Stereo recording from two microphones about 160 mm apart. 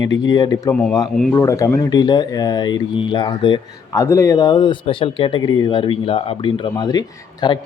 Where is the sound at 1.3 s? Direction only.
15° left (ahead or behind).